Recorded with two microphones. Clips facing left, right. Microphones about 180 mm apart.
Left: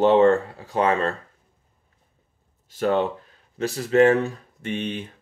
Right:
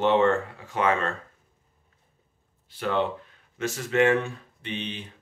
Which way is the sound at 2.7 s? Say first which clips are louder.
Left 5 dB; 45° left (ahead or behind).